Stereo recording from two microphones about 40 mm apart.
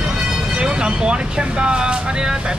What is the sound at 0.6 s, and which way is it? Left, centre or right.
Speech, right.